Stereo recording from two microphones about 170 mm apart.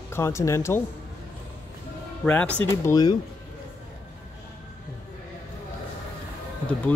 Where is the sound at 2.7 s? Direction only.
20° left (ahead or behind).